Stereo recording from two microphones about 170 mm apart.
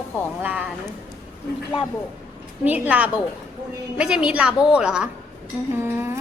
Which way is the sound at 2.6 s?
10° right (ahead or behind).